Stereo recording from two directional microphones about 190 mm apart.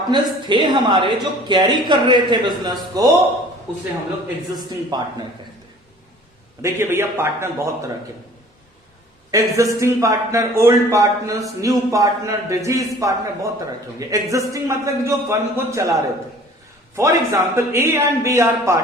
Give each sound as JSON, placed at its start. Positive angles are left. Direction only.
{"t": 0.1, "sound": "a woman's voice", "side_deg": -25}
{"t": 4.9, "sound": "a woman's voice", "side_deg": -20}
{"t": 6.6, "sound": "a man's voice", "side_deg": -15}
{"t": 9.3, "sound": "a man's voice", "side_deg": -15}